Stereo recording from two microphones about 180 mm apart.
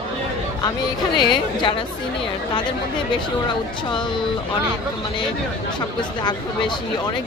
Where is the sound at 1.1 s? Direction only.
25° left (ahead or behind).